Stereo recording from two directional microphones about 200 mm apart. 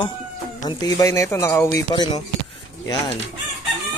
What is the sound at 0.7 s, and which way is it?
Speech, 15° left (ahead or behind).